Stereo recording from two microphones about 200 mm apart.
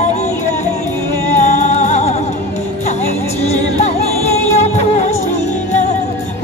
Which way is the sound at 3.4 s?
30° left (ahead or behind).